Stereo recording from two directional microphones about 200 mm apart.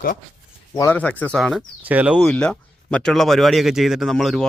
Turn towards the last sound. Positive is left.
turn(degrees=0)  # may be behind; listen again after turning